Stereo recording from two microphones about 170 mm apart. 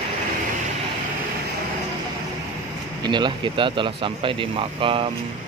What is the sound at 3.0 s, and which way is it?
Speech, 25° right (ahead or behind).